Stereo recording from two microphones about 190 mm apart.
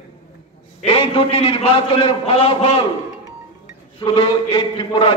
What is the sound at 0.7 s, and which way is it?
A man's voice, 30° left (ahead or behind).